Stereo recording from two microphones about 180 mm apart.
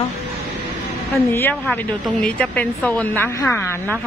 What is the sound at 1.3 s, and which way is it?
A woman's voice, 10° left (ahead or behind).